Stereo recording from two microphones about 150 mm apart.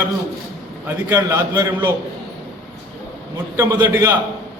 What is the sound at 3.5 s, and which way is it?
Speech, 20° right (ahead or behind).